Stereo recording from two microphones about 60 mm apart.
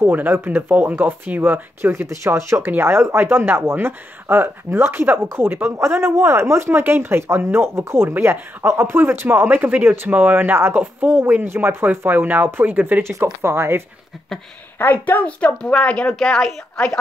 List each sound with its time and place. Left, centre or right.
0.0 s speech: right
2.0 s speech: right
8.1 s speech: right
9.6 s speech: right
13.0 s speech: right
14.8 s a woman's voice: left
16.2 s a woman's voice: centre